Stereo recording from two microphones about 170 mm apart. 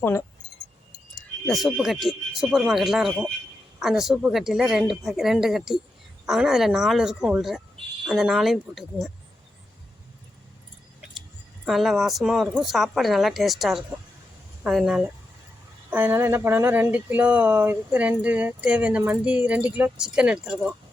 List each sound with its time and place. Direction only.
1.5 s speech: centre (ahead or behind)
11.6 s speech: centre (ahead or behind)